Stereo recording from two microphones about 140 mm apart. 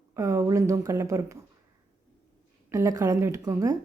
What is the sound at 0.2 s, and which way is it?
A woman's voice, 25° right (ahead or behind).